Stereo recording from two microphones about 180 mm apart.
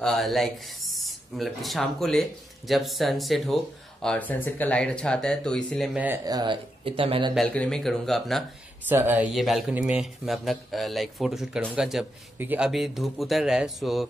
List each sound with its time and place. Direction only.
0.0 s speech: centre (ahead or behind)
5.9 s speech: 10° right (ahead or behind)
6.2 s speech: 25° right (ahead or behind)
7.3 s speech: 5° left (ahead or behind)
8.8 s speech: 10° right (ahead or behind)